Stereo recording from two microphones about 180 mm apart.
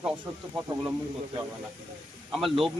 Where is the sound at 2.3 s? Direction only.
Centre (ahead or behind).